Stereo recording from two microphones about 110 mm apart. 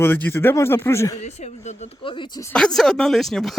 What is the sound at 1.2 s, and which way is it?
Speech, 85° left.